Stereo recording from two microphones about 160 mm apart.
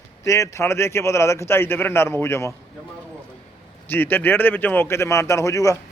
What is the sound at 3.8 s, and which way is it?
Speech, 10° left (ahead or behind).